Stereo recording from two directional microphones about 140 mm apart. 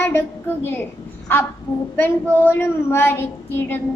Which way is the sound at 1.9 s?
15° left (ahead or behind).